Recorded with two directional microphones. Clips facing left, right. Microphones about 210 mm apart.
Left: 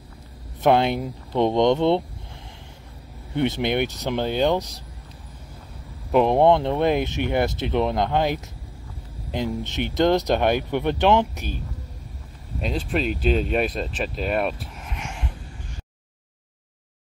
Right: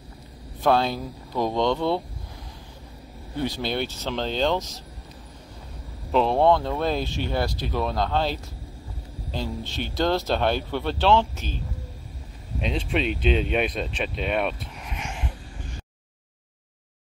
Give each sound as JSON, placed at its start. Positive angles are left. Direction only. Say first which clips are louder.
{"t": 0.6, "sound": "speech", "louder": "left 3 dB", "side_deg": 20}
{"t": 3.3, "sound": "speech", "louder": "left 5 dB", "side_deg": 20}
{"t": 6.1, "sound": "speech", "louder": "left 3 dB", "side_deg": 15}
{"t": 12.5, "sound": "speech", "louder": "left 1 dB", "side_deg": 0}